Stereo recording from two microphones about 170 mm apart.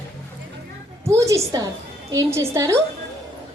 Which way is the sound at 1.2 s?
20° right (ahead or behind).